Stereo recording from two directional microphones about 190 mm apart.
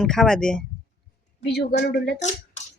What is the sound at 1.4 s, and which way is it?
Speech, 60° left (ahead or behind).